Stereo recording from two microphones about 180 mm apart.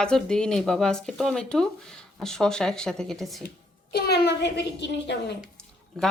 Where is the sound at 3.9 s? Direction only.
60° left (ahead or behind).